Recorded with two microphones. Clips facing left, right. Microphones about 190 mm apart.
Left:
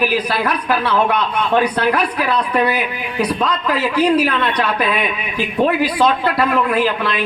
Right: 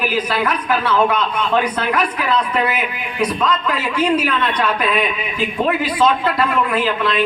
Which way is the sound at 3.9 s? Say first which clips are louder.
Left 3 dB; 35° left (ahead or behind).